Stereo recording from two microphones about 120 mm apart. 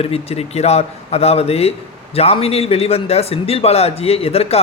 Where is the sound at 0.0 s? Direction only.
55° left (ahead or behind).